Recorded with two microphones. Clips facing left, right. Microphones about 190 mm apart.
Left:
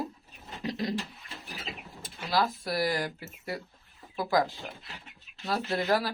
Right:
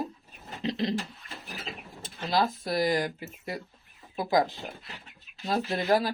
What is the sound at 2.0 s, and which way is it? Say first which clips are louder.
Speech: right 2 dB; 25° right (ahead or behind).